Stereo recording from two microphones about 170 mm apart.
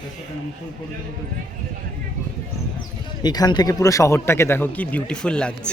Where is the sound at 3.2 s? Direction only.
25° left (ahead or behind); by 5.7 s 5° left (ahead or behind).